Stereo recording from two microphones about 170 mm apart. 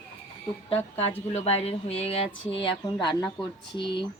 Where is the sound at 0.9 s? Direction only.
40° left (ahead or behind).